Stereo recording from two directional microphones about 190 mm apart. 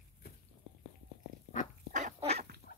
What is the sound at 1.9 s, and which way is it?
Dog, 35° right (ahead or behind).